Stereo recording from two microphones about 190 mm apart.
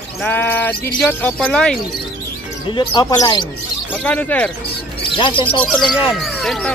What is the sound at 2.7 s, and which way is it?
Speech, 20° left (ahead or behind).